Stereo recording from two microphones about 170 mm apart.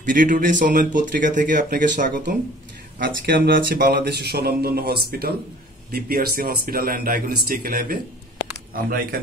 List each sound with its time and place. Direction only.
0.1 s speech: 50° right (ahead or behind)
3.0 s speech: 65° right (ahead or behind)
9.1 s speech: 60° right (ahead or behind)